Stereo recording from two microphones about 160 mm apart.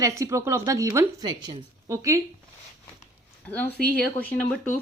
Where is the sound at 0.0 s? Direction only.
20° right (ahead or behind).